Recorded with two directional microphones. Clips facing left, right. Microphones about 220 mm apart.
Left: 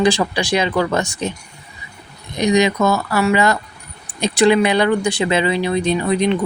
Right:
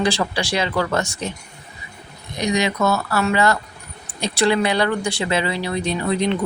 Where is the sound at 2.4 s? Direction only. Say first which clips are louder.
Left 5 dB; 15° left (ahead or behind).